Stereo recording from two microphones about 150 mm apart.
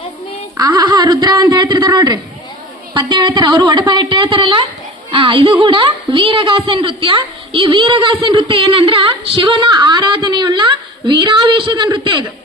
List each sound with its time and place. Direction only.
0.5 s a man's voice: 25° right (ahead or behind)